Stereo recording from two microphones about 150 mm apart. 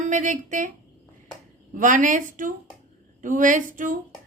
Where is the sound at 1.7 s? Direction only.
60° right (ahead or behind).